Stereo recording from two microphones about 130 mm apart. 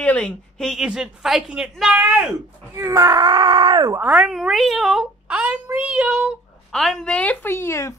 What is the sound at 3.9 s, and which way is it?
Speech, 10° right (ahead or behind).